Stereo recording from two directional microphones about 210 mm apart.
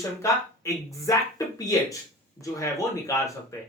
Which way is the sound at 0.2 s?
15° left (ahead or behind).